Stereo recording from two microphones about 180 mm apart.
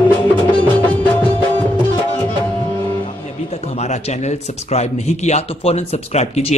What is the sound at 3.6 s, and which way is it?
A man's voice, 35° left (ahead or behind).